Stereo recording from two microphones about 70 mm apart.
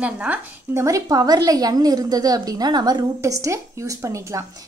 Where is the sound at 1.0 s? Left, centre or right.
Right.